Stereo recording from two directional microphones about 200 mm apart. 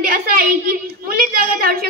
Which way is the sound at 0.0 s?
45° right (ahead or behind).